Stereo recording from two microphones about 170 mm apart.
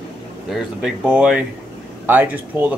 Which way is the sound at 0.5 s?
5° right (ahead or behind).